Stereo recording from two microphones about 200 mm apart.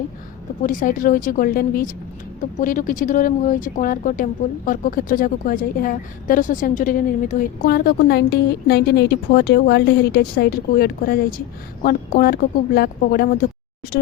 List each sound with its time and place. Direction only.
0.6 s speech: 40° left (ahead or behind)